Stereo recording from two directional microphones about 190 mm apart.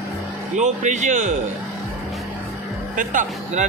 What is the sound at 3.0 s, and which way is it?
Speech, 45° right (ahead or behind).